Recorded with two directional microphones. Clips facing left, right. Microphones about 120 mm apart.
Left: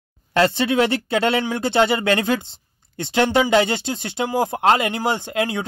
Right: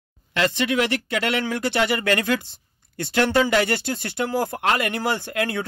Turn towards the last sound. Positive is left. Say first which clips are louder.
# left 2 dB
turn(degrees=20)  # may be behind; listen again after turning